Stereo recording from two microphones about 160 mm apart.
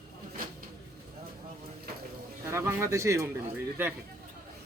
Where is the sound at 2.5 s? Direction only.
15° right (ahead or behind).